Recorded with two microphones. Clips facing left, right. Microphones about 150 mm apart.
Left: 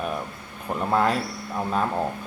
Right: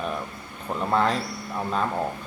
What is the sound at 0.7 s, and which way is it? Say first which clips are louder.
Speech: left 1 dB; 5° left (ahead or behind).